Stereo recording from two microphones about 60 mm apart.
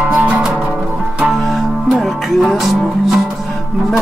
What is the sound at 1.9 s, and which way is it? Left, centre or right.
Music, centre.